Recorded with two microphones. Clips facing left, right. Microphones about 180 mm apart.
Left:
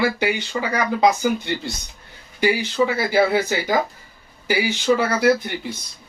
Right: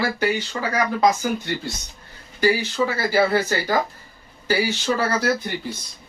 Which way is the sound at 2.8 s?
10° left (ahead or behind).